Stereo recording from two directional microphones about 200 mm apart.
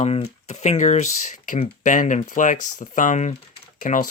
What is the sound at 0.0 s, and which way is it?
Speech, 30° left (ahead or behind).